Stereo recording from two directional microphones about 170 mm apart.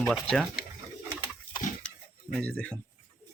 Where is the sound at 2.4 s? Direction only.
10° left (ahead or behind).